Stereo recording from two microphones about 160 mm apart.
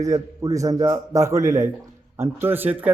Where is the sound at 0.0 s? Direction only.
20° right (ahead or behind).